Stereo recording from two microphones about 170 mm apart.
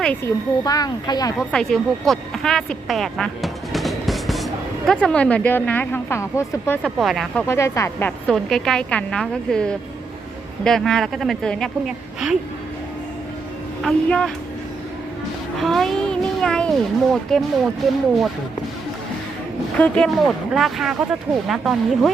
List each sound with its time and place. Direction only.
0.3 s speech: 20° left (ahead or behind)
1.5 s a woman's voice: 5° left (ahead or behind)
6.8 s speech: centre (ahead or behind)
7.4 s speech: 15° left (ahead or behind); by 12.4 s centre (ahead or behind)
13.8 s speech: 5° left (ahead or behind)
15.5 s speech: centre (ahead or behind)
19.7 s speech: 5° left (ahead or behind)